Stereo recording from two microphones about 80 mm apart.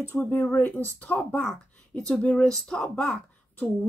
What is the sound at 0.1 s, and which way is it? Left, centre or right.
A woman's voice, left.